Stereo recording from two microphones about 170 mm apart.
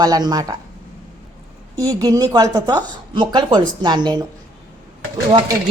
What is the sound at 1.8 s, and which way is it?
Speech, 20° right (ahead or behind).